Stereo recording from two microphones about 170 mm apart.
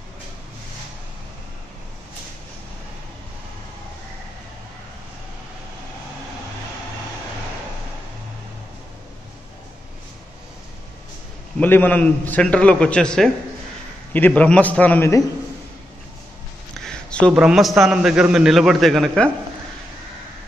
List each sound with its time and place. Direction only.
11.6 s a man's voice: 10° left (ahead or behind)
16.7 s a sound: 5° left (ahead or behind)
17.3 s a man's voice: 5° right (ahead or behind)